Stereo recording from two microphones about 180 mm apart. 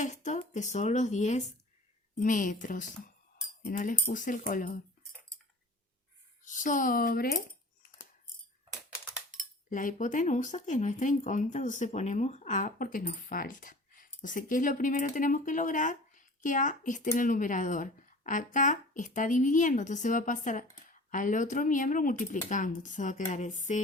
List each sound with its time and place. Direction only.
0.0 s speech: 40° left (ahead or behind)
2.1 s cutlery: 45° left (ahead or behind)
6.4 s speech: 45° left (ahead or behind)
9.4 s cutlery: 45° left (ahead or behind)